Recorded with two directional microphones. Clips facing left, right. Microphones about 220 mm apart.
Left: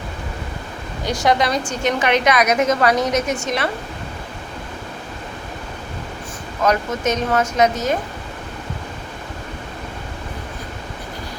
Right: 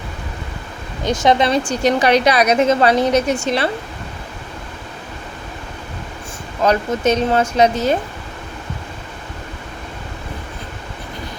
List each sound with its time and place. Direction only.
1.0 s a woman's voice: 20° right (ahead or behind)
6.6 s a woman's voice: 30° right (ahead or behind)